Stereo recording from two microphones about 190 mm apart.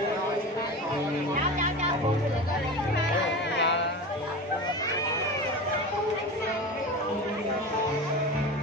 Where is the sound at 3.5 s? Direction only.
70° left (ahead or behind).